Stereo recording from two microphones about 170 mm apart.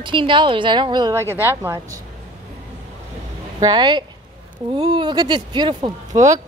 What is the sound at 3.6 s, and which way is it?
Speech, 25° right (ahead or behind).